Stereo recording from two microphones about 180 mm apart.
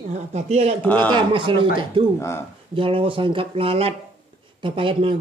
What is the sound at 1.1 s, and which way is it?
Speech, 30° right (ahead or behind).